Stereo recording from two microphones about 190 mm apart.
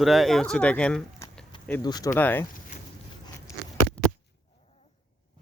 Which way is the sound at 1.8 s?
20° left (ahead or behind).